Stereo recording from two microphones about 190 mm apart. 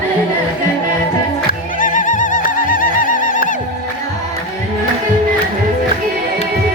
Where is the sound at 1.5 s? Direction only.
45° left (ahead or behind).